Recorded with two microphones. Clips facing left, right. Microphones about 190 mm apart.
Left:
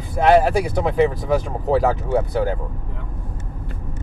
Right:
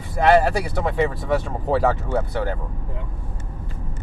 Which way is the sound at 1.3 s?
5° left (ahead or behind).